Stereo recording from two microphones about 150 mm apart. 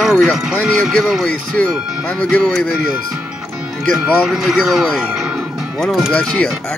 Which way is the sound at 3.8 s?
Centre (ahead or behind).